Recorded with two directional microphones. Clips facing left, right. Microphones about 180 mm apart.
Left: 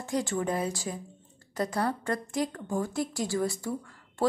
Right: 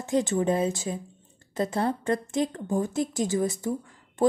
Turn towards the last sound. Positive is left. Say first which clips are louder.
# right 3 dB
turn(degrees=-20)  # may be behind; listen again after turning